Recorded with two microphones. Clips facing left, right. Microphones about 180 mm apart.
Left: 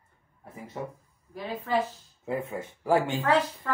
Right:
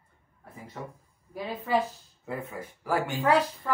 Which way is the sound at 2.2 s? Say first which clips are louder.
Left 4 dB; 25° left (ahead or behind).